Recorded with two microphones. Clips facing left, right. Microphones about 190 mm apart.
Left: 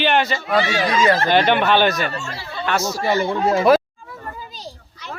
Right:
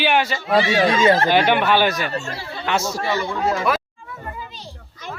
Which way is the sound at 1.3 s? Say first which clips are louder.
Left 1 dB; 10° right (ahead or behind).